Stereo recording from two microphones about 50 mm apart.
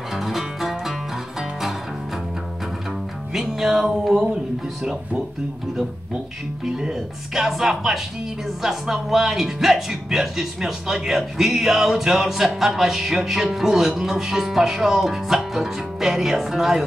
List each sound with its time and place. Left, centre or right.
0.1 s music: centre
3.3 s speech: centre
6.6 s speech: centre